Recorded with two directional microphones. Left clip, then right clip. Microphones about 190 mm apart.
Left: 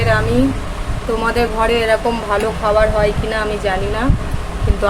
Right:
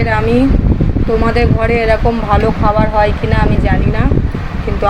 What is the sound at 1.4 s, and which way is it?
Speech, 5° right (ahead or behind).